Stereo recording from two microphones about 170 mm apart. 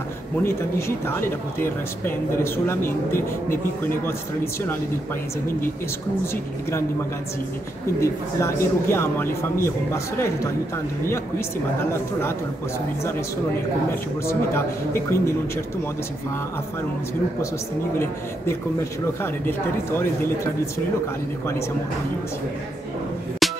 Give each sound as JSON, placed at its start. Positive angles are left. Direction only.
{"t": 0.4, "sound": "speech", "side_deg": 15}
{"t": 8.0, "sound": "speech", "side_deg": 15}
{"t": 14.2, "sound": "speech", "side_deg": 15}
{"t": 23.4, "sound": "music", "side_deg": 0}